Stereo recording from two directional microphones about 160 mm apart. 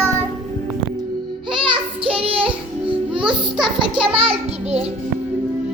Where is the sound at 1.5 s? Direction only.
30° right (ahead or behind).